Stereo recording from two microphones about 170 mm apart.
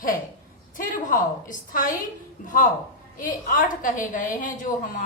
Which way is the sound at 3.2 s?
50° left (ahead or behind).